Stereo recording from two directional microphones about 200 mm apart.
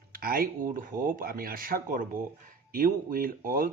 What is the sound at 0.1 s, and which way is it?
Speech, 45° right (ahead or behind).